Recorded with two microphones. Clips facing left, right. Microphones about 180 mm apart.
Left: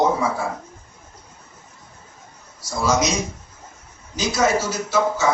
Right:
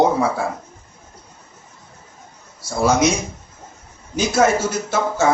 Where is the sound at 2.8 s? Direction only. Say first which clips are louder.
Right 4 dB; 55° right (ahead or behind).